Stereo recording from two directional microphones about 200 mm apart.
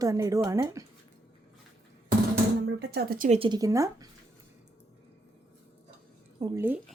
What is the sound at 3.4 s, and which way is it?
Dishes, 20° right (ahead or behind).